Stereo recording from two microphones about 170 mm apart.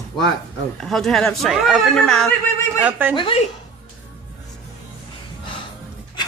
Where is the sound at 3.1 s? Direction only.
30° left (ahead or behind).